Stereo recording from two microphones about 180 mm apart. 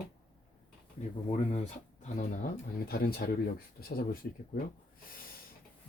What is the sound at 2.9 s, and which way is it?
Speech, 55° left (ahead or behind).